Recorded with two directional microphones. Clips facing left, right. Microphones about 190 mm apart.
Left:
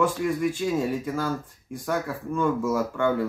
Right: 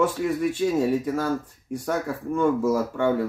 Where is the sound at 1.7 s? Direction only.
20° right (ahead or behind).